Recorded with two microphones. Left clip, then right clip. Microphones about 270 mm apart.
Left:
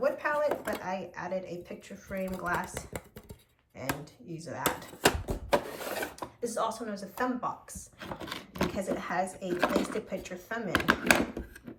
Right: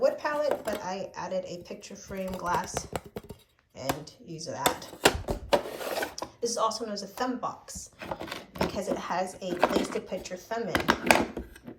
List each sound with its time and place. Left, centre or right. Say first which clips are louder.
0.0 s speech: right 2 dB; centre